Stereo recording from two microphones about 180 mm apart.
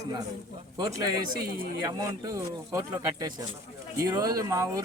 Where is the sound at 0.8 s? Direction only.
20° right (ahead or behind).